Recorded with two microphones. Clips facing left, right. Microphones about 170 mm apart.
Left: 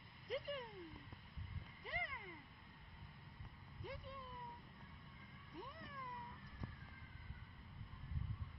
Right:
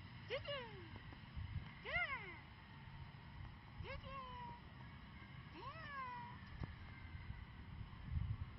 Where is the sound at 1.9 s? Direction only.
35° left (ahead or behind).